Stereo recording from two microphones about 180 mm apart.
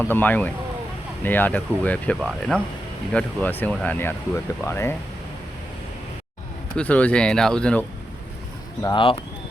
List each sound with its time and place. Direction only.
0.0 s speech: 10° left (ahead or behind)
6.7 s speech: 10° left (ahead or behind)
8.8 s speech: 25° left (ahead or behind)